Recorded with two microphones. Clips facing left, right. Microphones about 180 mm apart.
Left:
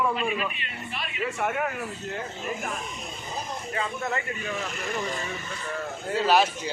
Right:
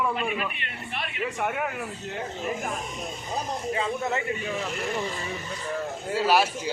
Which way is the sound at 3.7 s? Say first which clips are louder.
Right 2 dB; 25° right (ahead or behind).